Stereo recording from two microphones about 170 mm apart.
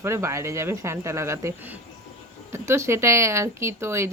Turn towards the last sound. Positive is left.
turn(degrees=-15)  # may be behind; listen again after turning